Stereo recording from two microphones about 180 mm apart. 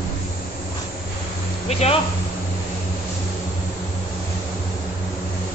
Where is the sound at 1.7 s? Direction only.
35° left (ahead or behind).